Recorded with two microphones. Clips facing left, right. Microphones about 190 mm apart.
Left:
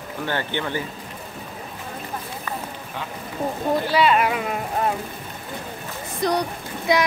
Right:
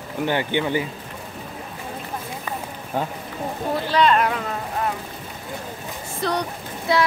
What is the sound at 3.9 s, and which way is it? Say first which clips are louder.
Speech: right 2 dB; 5° left (ahead or behind).